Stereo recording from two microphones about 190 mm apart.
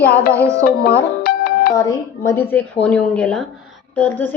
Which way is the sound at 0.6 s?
55° left (ahead or behind).